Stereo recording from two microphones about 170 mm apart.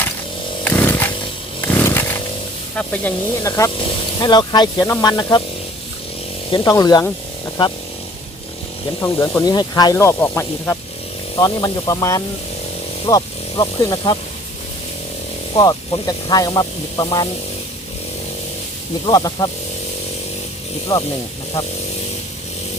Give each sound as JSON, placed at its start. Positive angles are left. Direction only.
{"t": 0.6, "sound": "chainsaw", "side_deg": 10}
{"t": 1.6, "sound": "roaring cats", "side_deg": 10}
{"t": 2.7, "sound": "speech", "side_deg": 10}
{"t": 6.5, "sound": "speech", "side_deg": 25}
{"t": 9.0, "sound": "speech", "side_deg": 15}
{"t": 15.5, "sound": "speech", "side_deg": 20}
{"t": 19.0, "sound": "speech", "side_deg": 20}
{"t": 20.9, "sound": "speech", "side_deg": 25}